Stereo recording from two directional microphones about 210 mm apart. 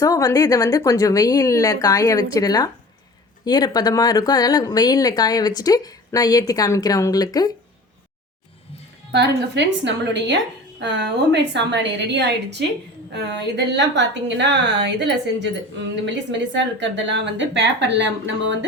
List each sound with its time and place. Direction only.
0.0 s speech: 15° left (ahead or behind)
9.1 s a woman's voice: 55° right (ahead or behind)